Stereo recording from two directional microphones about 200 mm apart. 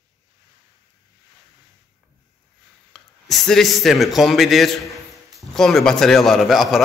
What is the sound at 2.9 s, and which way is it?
A man's voice, centre (ahead or behind).